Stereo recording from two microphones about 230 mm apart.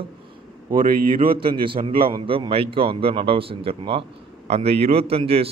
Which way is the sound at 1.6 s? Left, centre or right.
Right.